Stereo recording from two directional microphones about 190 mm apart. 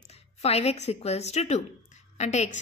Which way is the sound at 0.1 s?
35° left (ahead or behind).